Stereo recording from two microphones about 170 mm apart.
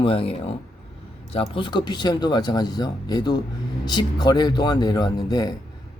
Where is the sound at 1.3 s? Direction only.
30° left (ahead or behind).